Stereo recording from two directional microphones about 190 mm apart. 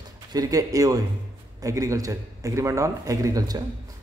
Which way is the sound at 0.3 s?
20° right (ahead or behind).